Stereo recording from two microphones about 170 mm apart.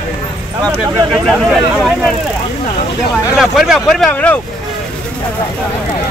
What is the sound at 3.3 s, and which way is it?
Speech, 5° right (ahead or behind).